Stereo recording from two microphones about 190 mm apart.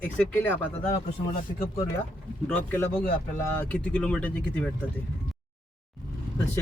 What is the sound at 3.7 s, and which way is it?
Music, 5° left (ahead or behind).